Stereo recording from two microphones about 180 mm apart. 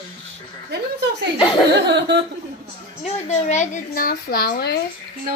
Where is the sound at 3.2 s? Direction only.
40° left (ahead or behind); by 4.8 s 60° left (ahead or behind).